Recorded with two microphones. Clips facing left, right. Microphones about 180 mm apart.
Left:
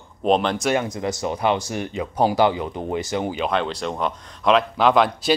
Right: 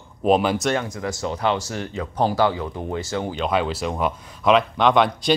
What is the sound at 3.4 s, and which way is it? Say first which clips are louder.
Speech: right 1 dB; 5° right (ahead or behind).